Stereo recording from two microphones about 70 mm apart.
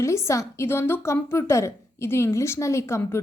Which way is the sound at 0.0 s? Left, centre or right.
Left.